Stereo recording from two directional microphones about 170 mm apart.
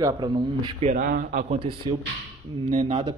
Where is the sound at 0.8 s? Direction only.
50° right (ahead or behind).